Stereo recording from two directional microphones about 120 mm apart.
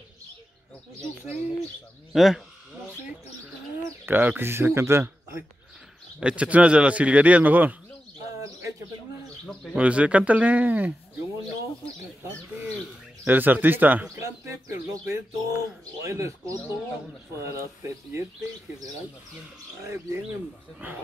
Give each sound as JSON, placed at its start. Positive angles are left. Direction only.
{"t": 2.1, "sound": "speech", "side_deg": 0}
{"t": 4.0, "sound": "speech", "side_deg": -15}
{"t": 6.1, "sound": "a man's voice", "side_deg": -10}
{"t": 9.8, "sound": "a man's voice", "side_deg": -10}
{"t": 13.2, "sound": "a man's voice", "side_deg": -15}
{"t": 20.8, "sound": "a man's voice", "side_deg": -15}